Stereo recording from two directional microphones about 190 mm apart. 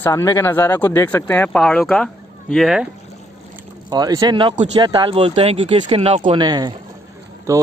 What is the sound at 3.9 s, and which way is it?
Speech, 20° right (ahead or behind).